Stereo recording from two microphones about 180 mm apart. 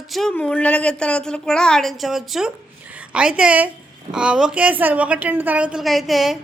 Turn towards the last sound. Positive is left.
turn(degrees=0)  # may be behind; listen again after turning